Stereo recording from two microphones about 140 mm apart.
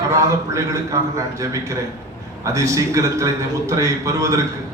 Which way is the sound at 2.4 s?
25° right (ahead or behind).